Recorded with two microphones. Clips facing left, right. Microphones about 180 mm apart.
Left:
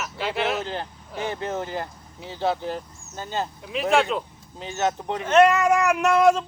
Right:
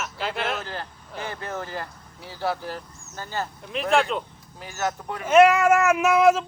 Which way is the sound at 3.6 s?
Centre (ahead or behind).